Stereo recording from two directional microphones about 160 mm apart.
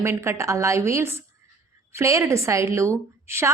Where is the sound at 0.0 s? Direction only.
15° right (ahead or behind).